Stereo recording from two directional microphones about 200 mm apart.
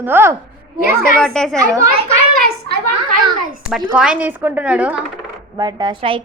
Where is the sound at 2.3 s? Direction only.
50° right (ahead or behind).